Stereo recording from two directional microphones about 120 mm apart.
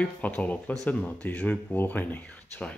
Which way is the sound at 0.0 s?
10° left (ahead or behind).